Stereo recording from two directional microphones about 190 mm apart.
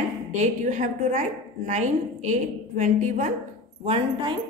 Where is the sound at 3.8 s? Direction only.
30° right (ahead or behind).